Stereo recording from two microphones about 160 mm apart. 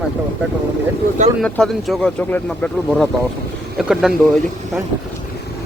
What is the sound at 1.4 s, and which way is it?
Speech, 5° left (ahead or behind).